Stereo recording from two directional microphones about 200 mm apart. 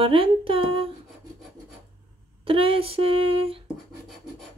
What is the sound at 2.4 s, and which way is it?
Speech, 25° right (ahead or behind).